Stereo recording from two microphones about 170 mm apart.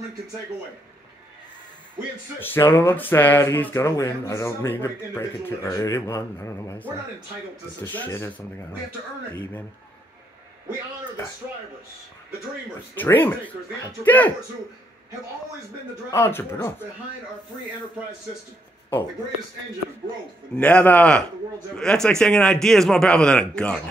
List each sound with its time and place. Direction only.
2.4 s speech: 10° left (ahead or behind)
7.9 s speech: 10° left (ahead or behind)
12.9 s speech: 10° left (ahead or behind)
16.1 s speech: 15° left (ahead or behind)
20.5 s a man's voice: 10° left (ahead or behind)